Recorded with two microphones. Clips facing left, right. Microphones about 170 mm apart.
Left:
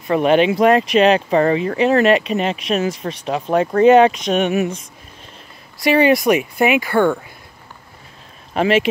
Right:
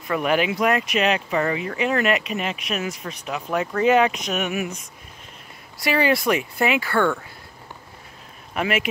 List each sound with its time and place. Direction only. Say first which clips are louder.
0.1 s speech: left 7 dB; 25° left (ahead or behind)
5.9 s speech: left 7 dB; 20° left (ahead or behind)
8.5 s speech: left 8 dB; 30° left (ahead or behind)